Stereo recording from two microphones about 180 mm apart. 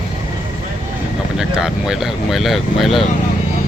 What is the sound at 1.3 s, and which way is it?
Speech, 5° right (ahead or behind).